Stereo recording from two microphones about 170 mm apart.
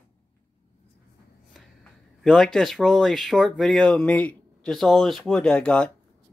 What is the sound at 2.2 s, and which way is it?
Speech, centre (ahead or behind).